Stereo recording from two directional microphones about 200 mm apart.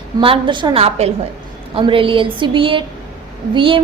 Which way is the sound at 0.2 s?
25° right (ahead or behind).